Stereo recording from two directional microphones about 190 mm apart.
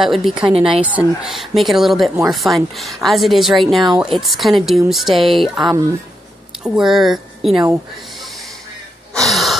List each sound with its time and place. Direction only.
0.0 s a woman's voice: centre (ahead or behind)
5.6 s speech: 20° right (ahead or behind)
6.6 s speech: 5° right (ahead or behind)
9.3 s a sound: centre (ahead or behind)